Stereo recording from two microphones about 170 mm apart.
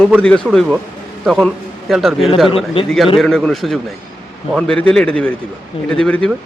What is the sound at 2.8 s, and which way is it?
Speech, 30° left (ahead or behind).